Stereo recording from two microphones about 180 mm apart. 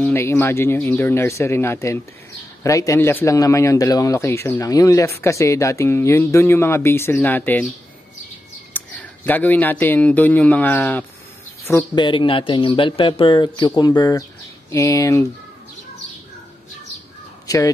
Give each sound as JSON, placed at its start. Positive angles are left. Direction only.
{"t": 0.0, "sound": "a man's voice", "side_deg": 15}
{"t": 8.7, "sound": "a man's voice", "side_deg": 10}
{"t": 17.5, "sound": "speech", "side_deg": 20}